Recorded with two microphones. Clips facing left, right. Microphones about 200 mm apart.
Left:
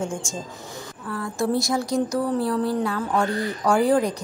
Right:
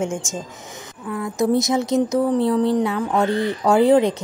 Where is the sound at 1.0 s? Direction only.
15° right (ahead or behind).